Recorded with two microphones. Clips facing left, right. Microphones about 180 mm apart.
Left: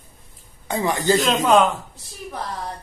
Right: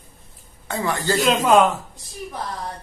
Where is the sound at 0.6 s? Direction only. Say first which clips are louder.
Left 3 dB; 15° left (ahead or behind).